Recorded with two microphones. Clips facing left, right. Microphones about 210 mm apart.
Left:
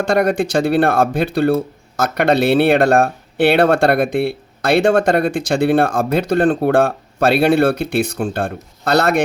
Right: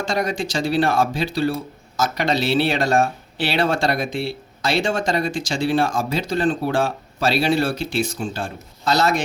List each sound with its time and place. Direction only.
0.0 s speech: 60° left (ahead or behind)